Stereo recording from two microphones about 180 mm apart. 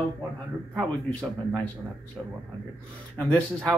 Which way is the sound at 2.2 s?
5° right (ahead or behind).